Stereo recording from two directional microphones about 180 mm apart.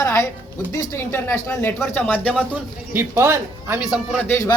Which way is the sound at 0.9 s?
15° left (ahead or behind).